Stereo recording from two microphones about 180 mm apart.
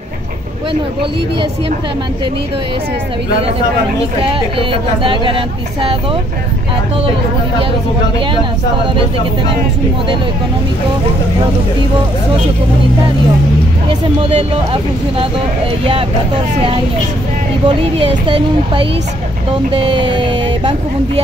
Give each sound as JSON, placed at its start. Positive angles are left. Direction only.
{"t": 4.3, "sound": "speech", "side_deg": -30}
{"t": 13.8, "sound": "speech", "side_deg": -30}
{"t": 17.6, "sound": "speech", "side_deg": -30}